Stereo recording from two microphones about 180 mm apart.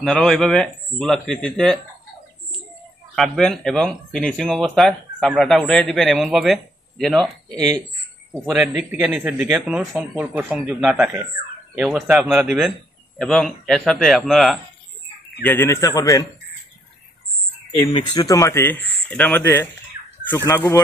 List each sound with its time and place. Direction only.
0.0 s speech: 5° left (ahead or behind)
3.2 s speech: 5° left (ahead or behind)
7.4 s speech: 20° right (ahead or behind)
8.5 s speech: centre (ahead or behind)
15.4 s speech: 10° left (ahead or behind)
17.7 s speech: 30° left (ahead or behind); by 20.8 s 15° left (ahead or behind)